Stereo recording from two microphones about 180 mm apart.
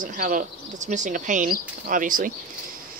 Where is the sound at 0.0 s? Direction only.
50° right (ahead or behind).